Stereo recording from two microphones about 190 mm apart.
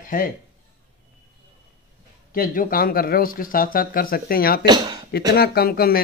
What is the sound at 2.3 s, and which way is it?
Speech, 45° left (ahead or behind).